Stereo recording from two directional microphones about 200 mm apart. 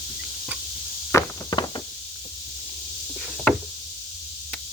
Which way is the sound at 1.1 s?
20° left (ahead or behind).